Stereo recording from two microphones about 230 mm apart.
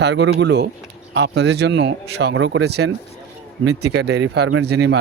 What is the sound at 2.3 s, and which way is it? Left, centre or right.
Speech, right.